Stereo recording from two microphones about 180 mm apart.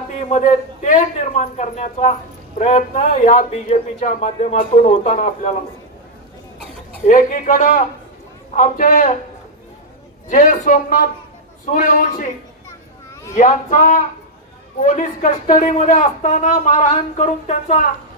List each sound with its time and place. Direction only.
0.3 s a man's voice: 45° left (ahead or behind)
7.1 s a man's voice: 45° left (ahead or behind)
10.3 s a man's voice: 45° left (ahead or behind)
13.3 s a man's voice: 45° left (ahead or behind)